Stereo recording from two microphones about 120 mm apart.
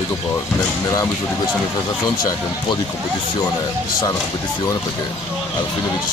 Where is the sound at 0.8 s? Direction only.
25° left (ahead or behind).